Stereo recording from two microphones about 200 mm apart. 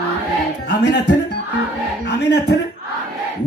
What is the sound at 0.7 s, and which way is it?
Speech, 55° left (ahead or behind).